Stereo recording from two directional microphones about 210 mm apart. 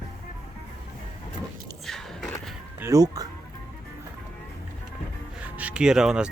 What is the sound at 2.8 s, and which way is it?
Speech, 15° right (ahead or behind).